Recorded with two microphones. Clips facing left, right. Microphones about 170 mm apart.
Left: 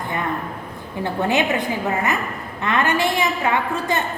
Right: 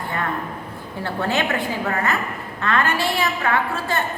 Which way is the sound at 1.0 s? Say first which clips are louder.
Left 3 dB; 15° left (ahead or behind).